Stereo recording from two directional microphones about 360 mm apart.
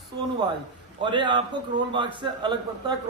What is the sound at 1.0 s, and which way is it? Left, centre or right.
A man's voice, centre.